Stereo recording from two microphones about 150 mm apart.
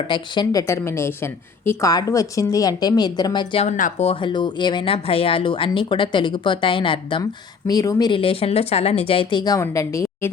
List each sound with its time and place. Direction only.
0.1 s a woman's voice: 25° left (ahead or behind)
3.6 s speech: 55° left (ahead or behind)
4.0 s a woman's voice: 35° left (ahead or behind); by 10.3 s 15° left (ahead or behind)